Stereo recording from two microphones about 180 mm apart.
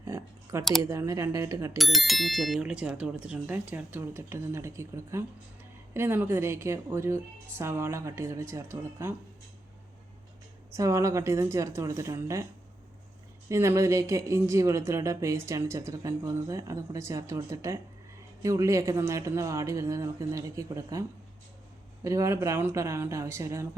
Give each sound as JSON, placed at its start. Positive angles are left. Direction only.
{"t": 0.0, "sound": "clicking", "side_deg": -15}
{"t": 0.8, "sound": "speech", "side_deg": -20}
{"t": 1.8, "sound": "speech", "side_deg": 0}
{"t": 10.8, "sound": "speech", "side_deg": -15}
{"t": 13.5, "sound": "speech", "side_deg": -15}
{"t": 22.0, "sound": "speech", "side_deg": -15}